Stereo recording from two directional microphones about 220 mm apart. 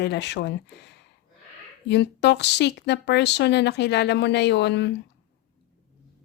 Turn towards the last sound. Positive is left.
turn(degrees=50)  # may be behind; listen again after turning